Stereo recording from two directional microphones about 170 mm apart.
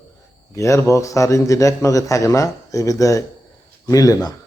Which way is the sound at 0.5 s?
15° left (ahead or behind).